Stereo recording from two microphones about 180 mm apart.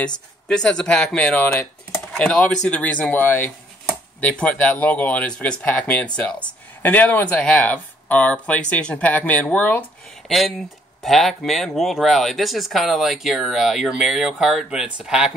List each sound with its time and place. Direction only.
0.0 s speech: 5° left (ahead or behind)